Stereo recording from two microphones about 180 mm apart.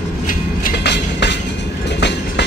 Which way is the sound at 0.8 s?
75° left (ahead or behind).